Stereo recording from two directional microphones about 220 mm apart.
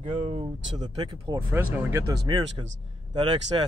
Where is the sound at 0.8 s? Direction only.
20° right (ahead or behind).